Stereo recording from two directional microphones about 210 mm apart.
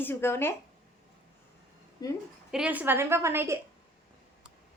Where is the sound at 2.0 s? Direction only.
20° left (ahead or behind).